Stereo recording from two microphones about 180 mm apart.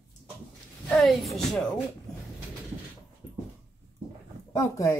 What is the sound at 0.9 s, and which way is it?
Speech, centre (ahead or behind).